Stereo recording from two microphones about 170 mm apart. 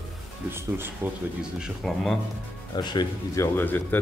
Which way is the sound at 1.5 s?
Centre (ahead or behind).